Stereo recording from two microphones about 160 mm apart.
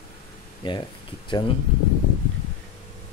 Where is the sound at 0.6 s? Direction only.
30° left (ahead or behind).